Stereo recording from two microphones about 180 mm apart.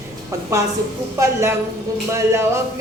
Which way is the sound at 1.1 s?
15° right (ahead or behind).